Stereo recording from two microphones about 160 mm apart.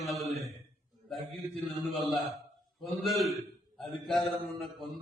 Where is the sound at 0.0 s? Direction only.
Centre (ahead or behind).